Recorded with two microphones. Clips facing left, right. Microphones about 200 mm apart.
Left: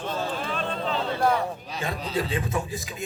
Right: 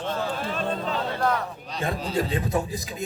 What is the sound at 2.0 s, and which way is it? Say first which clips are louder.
Speech: right 1 dB; 40° right (ahead or behind).